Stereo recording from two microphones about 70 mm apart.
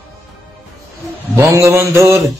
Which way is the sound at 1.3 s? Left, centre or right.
Right.